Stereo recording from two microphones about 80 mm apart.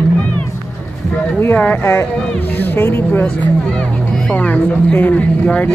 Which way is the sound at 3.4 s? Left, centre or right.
Centre.